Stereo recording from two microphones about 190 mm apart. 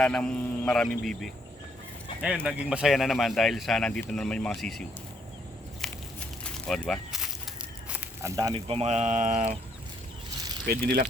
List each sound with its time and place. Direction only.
0.0 s speech: 5° left (ahead or behind)
5.8 s a sound: centre (ahead or behind)
6.4 s snake: 5° left (ahead or behind)
7.9 s walk: 15° right (ahead or behind)
8.6 s speech: 30° right (ahead or behind)
10.7 s speech: 55° right (ahead or behind)